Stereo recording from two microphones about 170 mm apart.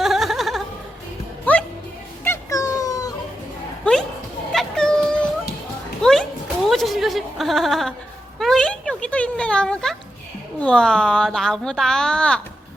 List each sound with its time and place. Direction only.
0.0 s music: centre (ahead or behind)
2.2 s cat: 15° left (ahead or behind)
4.5 s a sound: 5° left (ahead or behind)